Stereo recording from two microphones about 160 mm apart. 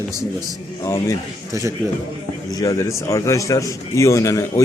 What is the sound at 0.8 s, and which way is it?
Speech, 20° left (ahead or behind).